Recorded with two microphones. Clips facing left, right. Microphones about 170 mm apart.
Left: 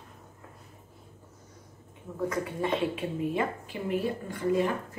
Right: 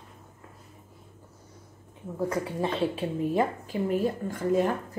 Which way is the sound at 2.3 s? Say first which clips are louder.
Left 1 dB; 30° right (ahead or behind).